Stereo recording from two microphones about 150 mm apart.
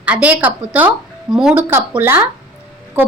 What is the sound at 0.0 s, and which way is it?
A woman's voice, 10° right (ahead or behind).